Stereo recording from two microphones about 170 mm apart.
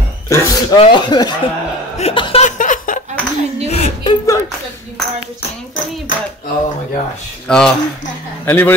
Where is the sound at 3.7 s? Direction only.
35° left (ahead or behind).